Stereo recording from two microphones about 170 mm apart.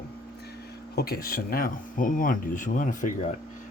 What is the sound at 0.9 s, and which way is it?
Speech, 65° left (ahead or behind).